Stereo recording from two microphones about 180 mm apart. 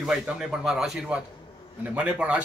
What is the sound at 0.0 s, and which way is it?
A man's voice, centre (ahead or behind).